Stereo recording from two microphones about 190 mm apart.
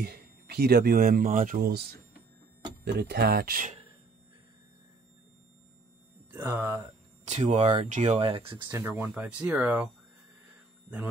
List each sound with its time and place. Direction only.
0.0 s speech: 55° right (ahead or behind)
6.3 s speech: 10° right (ahead or behind)
7.2 s speech: 35° right (ahead or behind)
8.6 s speech: 10° right (ahead or behind)